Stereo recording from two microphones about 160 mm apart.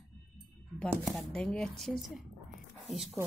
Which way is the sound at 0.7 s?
Centre (ahead or behind).